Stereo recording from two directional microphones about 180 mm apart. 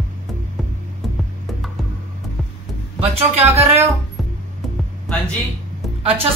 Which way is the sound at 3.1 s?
35° right (ahead or behind).